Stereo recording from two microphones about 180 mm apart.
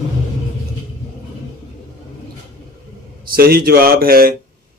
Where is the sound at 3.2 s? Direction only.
55° right (ahead or behind).